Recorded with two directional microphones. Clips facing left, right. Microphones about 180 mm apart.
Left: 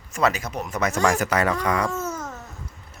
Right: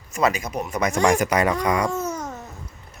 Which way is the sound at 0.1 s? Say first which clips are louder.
Right 1 dB; 10° right (ahead or behind).